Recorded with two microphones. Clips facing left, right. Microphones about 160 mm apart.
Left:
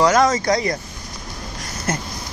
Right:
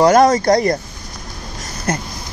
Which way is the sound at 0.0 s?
60° right (ahead or behind).